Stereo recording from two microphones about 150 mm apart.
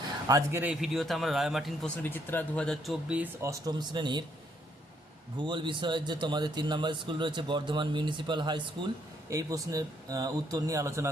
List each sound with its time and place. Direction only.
0.3 s speech: 20° right (ahead or behind)
0.6 s a man's voice: 5° right (ahead or behind)
2.0 s speech: 15° left (ahead or behind); by 3.2 s 5° right (ahead or behind)
3.4 s speech: 25° right (ahead or behind)
5.4 s a man's voice: 30° right (ahead or behind)